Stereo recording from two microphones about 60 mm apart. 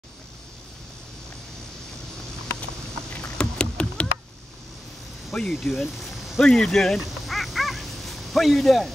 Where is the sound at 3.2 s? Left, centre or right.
Centre.